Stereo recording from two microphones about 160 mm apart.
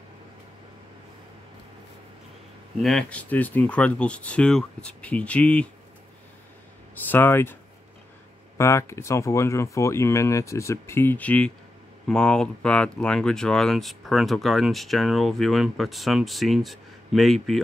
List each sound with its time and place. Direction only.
2.8 s speech: 5° left (ahead or behind)
7.1 s speech: 15° left (ahead or behind)
8.5 s speech: 15° left (ahead or behind); by 17.6 s centre (ahead or behind)